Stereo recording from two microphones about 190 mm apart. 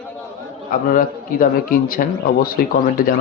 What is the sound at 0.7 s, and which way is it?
A man's voice, 45° left (ahead or behind).